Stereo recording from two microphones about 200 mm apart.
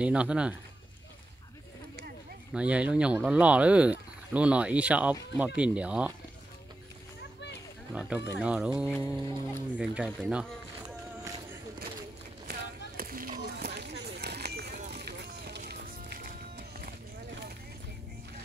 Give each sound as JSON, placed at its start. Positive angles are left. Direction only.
{"t": 0.0, "sound": "speech", "side_deg": -5}
{"t": 2.5, "sound": "speech", "side_deg": -5}
{"t": 7.9, "sound": "speech", "side_deg": -5}
{"t": 8.9, "sound": "speech", "side_deg": 10}
{"t": 9.8, "sound": "speech", "side_deg": -5}
{"t": 12.4, "sound": "a sound", "side_deg": -45}
{"t": 14.7, "sound": "run", "side_deg": -35}
{"t": 15.0, "sound": "run", "side_deg": -55}
{"t": 15.7, "sound": "music", "side_deg": -50}